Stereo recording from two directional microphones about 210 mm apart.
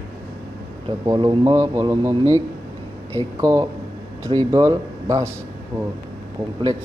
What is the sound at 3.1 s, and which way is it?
Speech, 15° right (ahead or behind).